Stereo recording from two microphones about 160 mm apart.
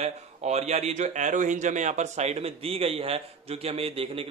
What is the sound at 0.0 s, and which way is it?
A man's voice, 45° right (ahead or behind).